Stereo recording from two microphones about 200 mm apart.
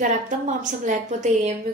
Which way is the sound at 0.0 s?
40° right (ahead or behind).